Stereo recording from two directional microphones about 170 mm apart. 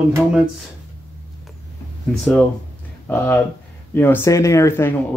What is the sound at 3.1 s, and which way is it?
Speech, 10° left (ahead or behind).